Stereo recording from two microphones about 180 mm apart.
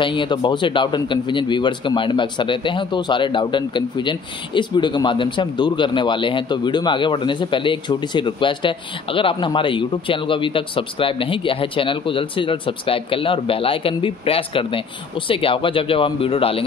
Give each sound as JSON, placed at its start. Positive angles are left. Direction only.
{"t": 0.0, "sound": "a man's voice", "side_deg": 25}